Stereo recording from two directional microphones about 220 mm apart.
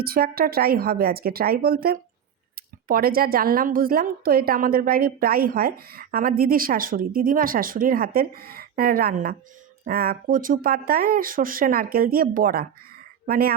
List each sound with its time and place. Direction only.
0.0 s a woman's voice: 45° right (ahead or behind)